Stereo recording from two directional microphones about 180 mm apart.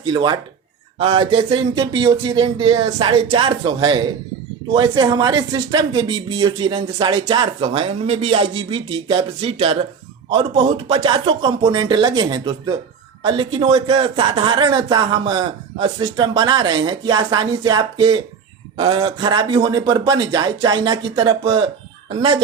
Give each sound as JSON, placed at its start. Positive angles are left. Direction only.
{"t": 0.0, "sound": "speech", "side_deg": -25}